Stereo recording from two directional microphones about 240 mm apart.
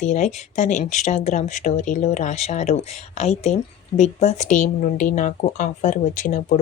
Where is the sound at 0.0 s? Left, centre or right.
Left.